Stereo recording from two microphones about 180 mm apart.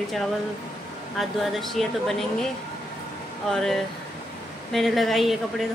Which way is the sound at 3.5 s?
Centre (ahead or behind).